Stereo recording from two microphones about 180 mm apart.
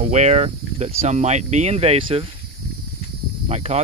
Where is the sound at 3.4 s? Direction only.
35° right (ahead or behind).